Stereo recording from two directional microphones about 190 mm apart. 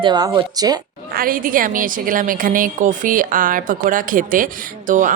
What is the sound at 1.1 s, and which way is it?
Speech, 50° right (ahead or behind).